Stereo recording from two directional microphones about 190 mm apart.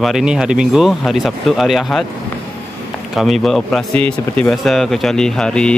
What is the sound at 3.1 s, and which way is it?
Speech, centre (ahead or behind).